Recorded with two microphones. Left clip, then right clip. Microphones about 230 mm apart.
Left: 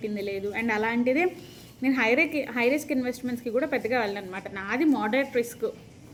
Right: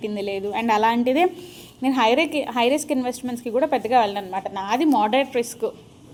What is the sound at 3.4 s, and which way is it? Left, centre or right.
Speech, right.